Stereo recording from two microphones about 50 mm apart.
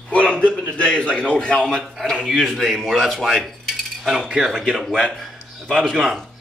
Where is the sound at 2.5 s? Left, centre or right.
Centre.